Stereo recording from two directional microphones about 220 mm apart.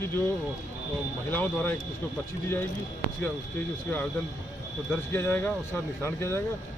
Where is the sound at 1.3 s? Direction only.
10° left (ahead or behind).